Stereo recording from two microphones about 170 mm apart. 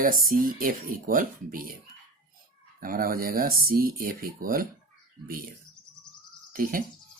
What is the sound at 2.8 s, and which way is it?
Speech, 55° right (ahead or behind).